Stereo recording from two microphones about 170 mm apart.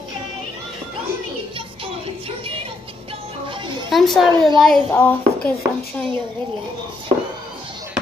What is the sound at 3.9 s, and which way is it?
A woman's voice, centre (ahead or behind).